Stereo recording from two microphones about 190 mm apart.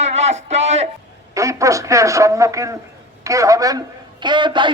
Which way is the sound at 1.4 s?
15° right (ahead or behind).